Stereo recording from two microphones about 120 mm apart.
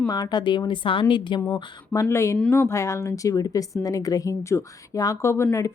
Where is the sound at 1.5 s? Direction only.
30° left (ahead or behind).